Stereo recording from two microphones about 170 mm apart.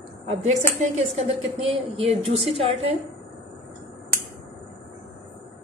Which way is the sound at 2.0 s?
35° right (ahead or behind).